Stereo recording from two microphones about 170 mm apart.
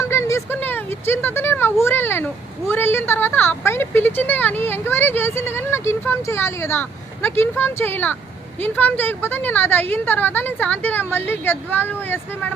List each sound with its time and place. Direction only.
0.0 s speech: 15° left (ahead or behind)